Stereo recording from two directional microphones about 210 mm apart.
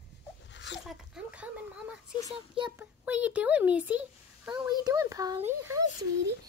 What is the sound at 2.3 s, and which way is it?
Speech, 25° right (ahead or behind).